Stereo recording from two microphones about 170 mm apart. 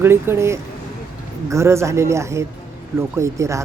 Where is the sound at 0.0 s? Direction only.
15° right (ahead or behind).